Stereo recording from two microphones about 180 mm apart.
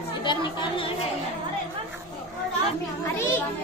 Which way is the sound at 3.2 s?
15° left (ahead or behind).